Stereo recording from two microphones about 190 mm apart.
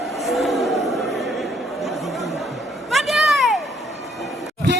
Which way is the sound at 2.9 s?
Centre (ahead or behind).